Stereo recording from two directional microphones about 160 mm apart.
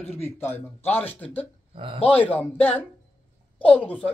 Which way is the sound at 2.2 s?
10° left (ahead or behind).